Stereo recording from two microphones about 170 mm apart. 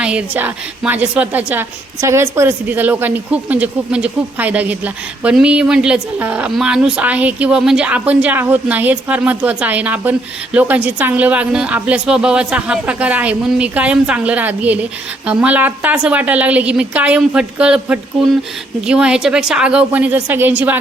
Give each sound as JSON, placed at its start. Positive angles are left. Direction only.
{"t": 0.0, "sound": "a woman's voice", "side_deg": -5}